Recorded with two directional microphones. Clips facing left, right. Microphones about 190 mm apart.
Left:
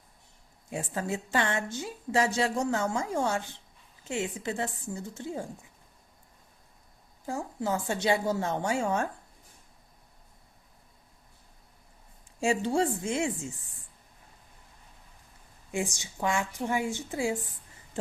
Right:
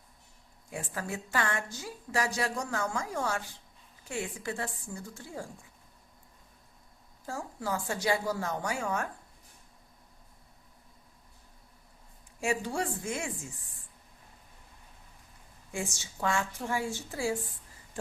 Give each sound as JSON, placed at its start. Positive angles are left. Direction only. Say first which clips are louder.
{"t": 0.7, "sound": "a woman's voice", "louder": "left 5 dB", "side_deg": 25}
{"t": 7.3, "sound": "a woman's voice", "louder": "left 4 dB", "side_deg": 20}
{"t": 12.4, "sound": "a woman's voice", "louder": "left 5 dB", "side_deg": 25}
{"t": 15.7, "sound": "a woman's voice", "louder": "left 5 dB", "side_deg": 15}
{"t": 18.0, "sound": "a sound", "louder": "left 5 dB", "side_deg": 25}